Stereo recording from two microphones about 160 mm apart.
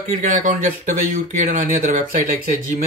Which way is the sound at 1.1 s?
55° right (ahead or behind).